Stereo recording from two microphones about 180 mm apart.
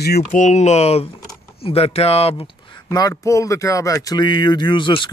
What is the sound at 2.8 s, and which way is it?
Speech, 20° left (ahead or behind).